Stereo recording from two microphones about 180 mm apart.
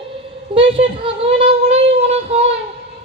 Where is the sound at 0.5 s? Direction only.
30° right (ahead or behind).